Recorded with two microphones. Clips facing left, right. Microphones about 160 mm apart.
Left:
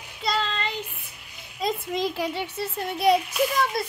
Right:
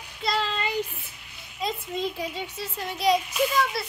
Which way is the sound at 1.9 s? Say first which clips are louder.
Left 3 dB; 85° left.